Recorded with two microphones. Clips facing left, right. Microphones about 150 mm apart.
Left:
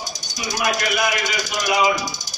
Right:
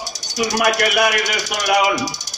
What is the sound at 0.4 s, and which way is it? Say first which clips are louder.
Speech: right 6 dB; 70° right (ahead or behind).